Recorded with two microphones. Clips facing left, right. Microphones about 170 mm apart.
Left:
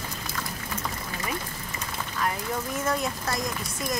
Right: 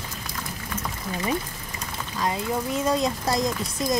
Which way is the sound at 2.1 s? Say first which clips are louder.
Right 4 dB; 20° right (ahead or behind).